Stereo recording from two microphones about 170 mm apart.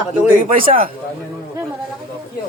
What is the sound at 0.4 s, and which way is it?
Speech, 55° right (ahead or behind).